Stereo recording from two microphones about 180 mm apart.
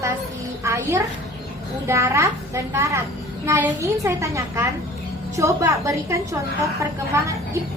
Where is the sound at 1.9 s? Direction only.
15° right (ahead or behind).